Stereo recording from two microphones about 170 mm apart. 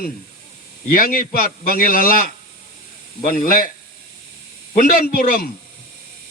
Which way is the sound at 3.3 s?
55° left (ahead or behind).